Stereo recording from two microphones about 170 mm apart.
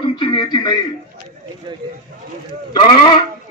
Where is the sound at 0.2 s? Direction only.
25° left (ahead or behind).